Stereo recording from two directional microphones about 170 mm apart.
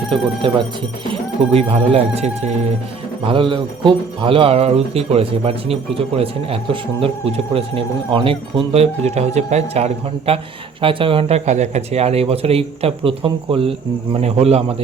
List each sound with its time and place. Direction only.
0.4 s speech: 30° right (ahead or behind)